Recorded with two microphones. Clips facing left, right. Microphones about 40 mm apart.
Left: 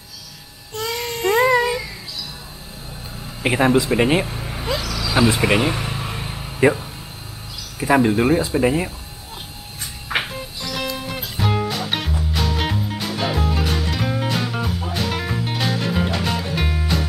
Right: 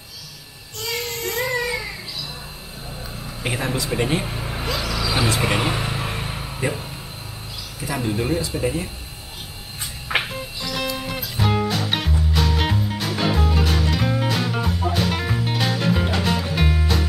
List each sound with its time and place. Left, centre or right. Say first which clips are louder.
0.7 s child singing: left 3 dB; left
3.4 s speech: left 8 dB; left
4.3 s vehicle: left 1 dB; centre
7.8 s speech: left 9 dB; left
10.1 s music: even; centre